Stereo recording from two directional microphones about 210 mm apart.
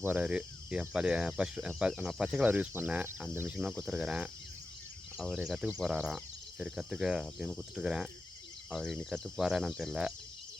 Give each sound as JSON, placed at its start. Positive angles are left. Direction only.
{"t": 0.0, "sound": "speech", "side_deg": -5}